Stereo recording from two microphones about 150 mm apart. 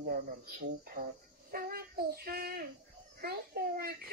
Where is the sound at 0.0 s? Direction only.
80° right.